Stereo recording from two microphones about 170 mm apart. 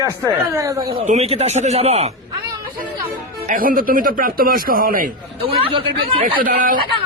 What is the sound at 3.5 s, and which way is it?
Speech, 55° right (ahead or behind).